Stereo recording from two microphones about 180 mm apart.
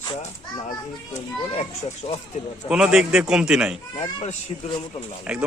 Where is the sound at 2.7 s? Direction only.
5° right (ahead or behind).